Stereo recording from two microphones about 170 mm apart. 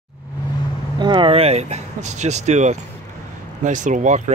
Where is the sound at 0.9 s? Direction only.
25° right (ahead or behind).